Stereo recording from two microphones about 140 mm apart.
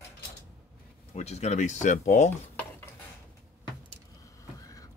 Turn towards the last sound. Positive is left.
turn(degrees=25)  # may be behind; listen again after turning